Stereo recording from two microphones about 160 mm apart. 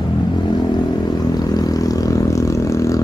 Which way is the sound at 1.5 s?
25° left (ahead or behind).